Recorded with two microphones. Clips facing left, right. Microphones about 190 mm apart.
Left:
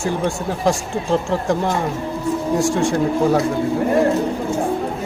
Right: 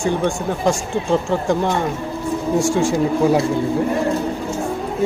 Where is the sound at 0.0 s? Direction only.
Centre (ahead or behind).